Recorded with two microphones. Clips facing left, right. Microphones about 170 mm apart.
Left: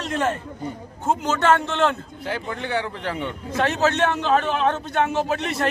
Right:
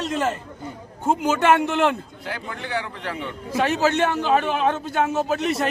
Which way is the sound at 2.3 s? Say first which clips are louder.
Left 3 dB; 25° left (ahead or behind).